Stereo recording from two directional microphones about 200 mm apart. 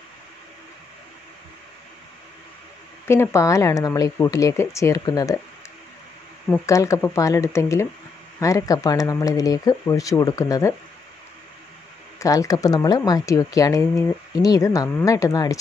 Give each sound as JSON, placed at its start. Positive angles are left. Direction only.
{"t": 3.1, "sound": "speech", "side_deg": 15}
{"t": 6.5, "sound": "speech", "side_deg": 15}
{"t": 12.2, "sound": "speech", "side_deg": 15}